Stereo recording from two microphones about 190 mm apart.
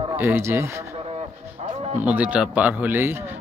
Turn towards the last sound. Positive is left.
turn(degrees=-10)  # may be behind; listen again after turning